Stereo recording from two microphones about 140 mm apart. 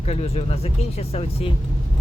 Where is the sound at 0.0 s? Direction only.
50° left (ahead or behind).